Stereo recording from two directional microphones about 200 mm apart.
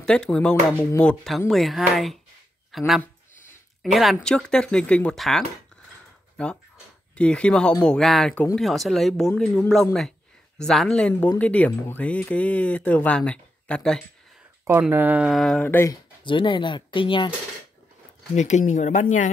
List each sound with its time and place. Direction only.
0.0 s speech: 5° left (ahead or behind)
14.6 s speech: 10° right (ahead or behind); by 17.3 s 25° left (ahead or behind)
18.3 s speech: 35° left (ahead or behind)